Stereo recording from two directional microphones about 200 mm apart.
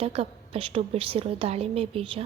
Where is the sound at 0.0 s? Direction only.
30° right (ahead or behind).